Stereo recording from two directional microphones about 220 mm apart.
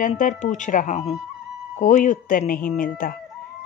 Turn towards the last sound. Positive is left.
turn(degrees=40)  # may be behind; listen again after turning